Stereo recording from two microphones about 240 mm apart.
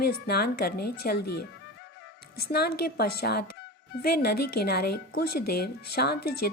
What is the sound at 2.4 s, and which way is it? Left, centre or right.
A woman's voice, left.